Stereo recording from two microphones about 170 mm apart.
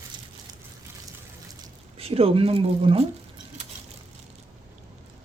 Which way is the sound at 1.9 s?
35° right (ahead or behind).